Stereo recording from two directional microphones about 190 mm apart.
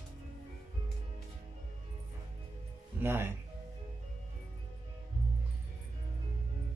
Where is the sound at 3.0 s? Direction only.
10° right (ahead or behind).